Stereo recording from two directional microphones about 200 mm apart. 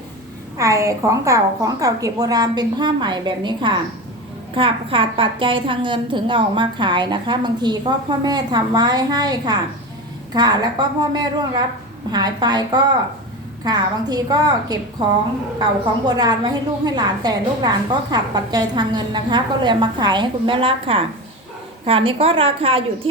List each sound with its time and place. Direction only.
0.5 s a woman's voice: 15° right (ahead or behind)
16.0 s a woman's voice: 20° right (ahead or behind)